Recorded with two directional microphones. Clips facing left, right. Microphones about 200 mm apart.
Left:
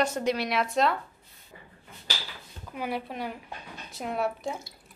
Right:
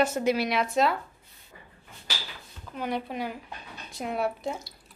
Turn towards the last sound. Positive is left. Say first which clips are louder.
# right 1 dB
turn(degrees=0)  # may be behind; listen again after turning